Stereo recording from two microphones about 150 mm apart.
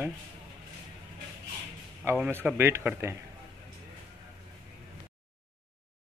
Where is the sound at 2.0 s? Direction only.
10° right (ahead or behind).